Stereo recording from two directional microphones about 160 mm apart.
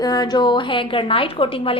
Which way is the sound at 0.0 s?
25° left (ahead or behind).